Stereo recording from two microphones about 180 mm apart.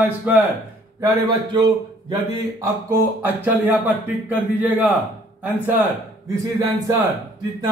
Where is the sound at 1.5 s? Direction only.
25° right (ahead or behind).